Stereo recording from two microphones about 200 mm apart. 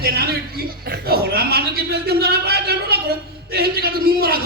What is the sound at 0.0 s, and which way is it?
Chuckle, 50° right (ahead or behind).